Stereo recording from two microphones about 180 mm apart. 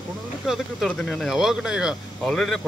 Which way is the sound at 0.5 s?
Centre (ahead or behind).